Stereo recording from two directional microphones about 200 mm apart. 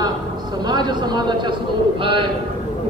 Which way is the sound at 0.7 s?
20° right (ahead or behind).